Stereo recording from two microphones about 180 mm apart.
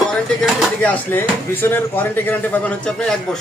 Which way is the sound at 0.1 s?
5° left (ahead or behind).